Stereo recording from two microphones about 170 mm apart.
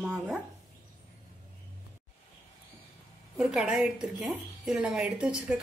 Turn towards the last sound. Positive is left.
turn(degrees=-5)  # may be behind; listen again after turning